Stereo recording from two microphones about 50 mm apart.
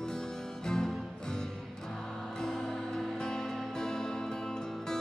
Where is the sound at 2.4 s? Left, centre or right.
Centre.